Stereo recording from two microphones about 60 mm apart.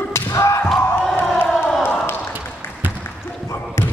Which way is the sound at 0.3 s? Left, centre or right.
Left.